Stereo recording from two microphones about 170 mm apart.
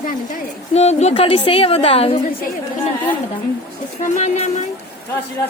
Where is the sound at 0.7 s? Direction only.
40° left (ahead or behind).